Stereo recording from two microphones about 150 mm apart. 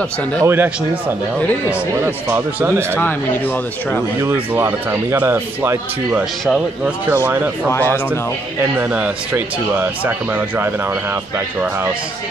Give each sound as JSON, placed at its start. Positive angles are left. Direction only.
{"t": 0.4, "sound": "speech", "side_deg": -15}
{"t": 1.7, "sound": "speech", "side_deg": -15}
{"t": 4.2, "sound": "speech", "side_deg": -15}
{"t": 7.2, "sound": "speech", "side_deg": -10}
{"t": 7.7, "sound": "speech", "side_deg": 15}
{"t": 8.7, "sound": "speech", "side_deg": -10}